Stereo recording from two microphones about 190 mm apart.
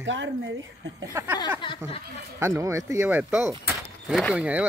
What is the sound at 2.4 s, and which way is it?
Speech, 15° right (ahead or behind).